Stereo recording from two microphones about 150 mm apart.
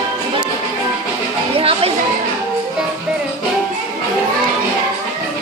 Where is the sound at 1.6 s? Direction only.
40° right (ahead or behind).